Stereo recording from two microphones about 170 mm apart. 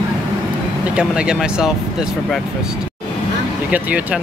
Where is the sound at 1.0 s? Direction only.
5° right (ahead or behind).